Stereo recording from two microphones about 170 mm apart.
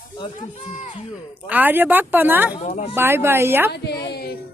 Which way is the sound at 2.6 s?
45° left (ahead or behind).